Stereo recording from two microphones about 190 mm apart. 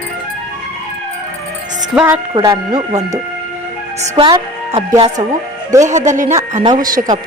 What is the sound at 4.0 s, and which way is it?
A woman's voice, 35° right (ahead or behind).